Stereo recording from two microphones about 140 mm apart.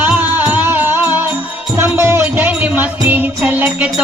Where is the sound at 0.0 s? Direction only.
15° right (ahead or behind).